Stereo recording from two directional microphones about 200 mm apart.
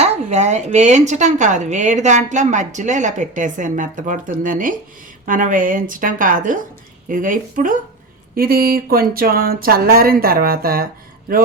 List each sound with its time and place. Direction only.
0.0 s speech: 35° right (ahead or behind)